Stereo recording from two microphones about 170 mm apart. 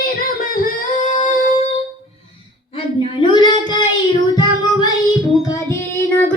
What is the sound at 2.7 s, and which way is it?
Child singing, 30° left (ahead or behind).